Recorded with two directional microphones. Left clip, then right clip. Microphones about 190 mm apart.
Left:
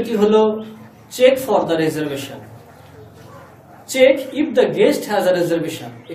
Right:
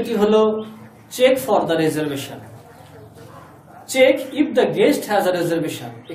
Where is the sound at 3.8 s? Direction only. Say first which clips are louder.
Left 2 dB; 15° right (ahead or behind).